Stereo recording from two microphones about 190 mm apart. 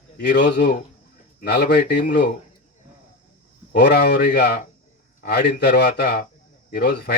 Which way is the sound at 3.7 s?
60° left (ahead or behind).